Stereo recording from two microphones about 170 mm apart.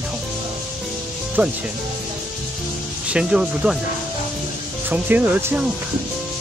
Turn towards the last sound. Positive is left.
turn(degrees=-10)  # may be behind; listen again after turning